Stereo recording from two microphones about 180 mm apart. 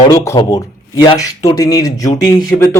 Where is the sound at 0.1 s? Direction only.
20° left (ahead or behind).